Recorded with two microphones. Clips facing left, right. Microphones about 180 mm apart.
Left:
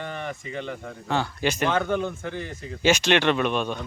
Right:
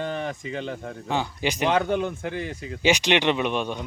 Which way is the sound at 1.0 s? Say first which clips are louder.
Left 1 dB; 15° right (ahead or behind).